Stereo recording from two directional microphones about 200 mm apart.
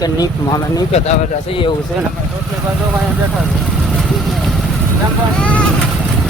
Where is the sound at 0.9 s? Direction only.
30° left (ahead or behind).